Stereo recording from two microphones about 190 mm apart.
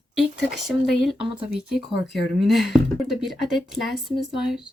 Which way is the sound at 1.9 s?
60° left (ahead or behind).